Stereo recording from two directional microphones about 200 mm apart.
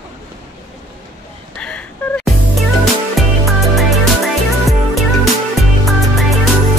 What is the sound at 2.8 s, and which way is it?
Music, centre (ahead or behind).